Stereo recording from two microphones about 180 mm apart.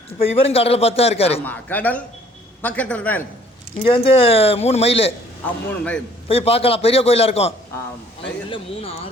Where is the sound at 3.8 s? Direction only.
35° left (ahead or behind).